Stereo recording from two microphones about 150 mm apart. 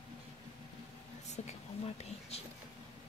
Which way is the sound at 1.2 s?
50° left (ahead or behind).